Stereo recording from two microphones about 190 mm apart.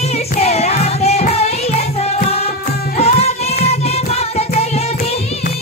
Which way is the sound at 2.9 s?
35° left (ahead or behind).